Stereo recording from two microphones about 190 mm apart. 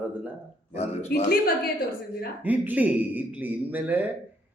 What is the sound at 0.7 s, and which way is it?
Speech, 35° left (ahead or behind).